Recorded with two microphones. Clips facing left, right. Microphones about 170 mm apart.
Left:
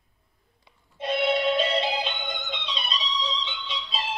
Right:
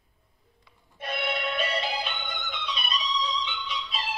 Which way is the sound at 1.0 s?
20° left (ahead or behind).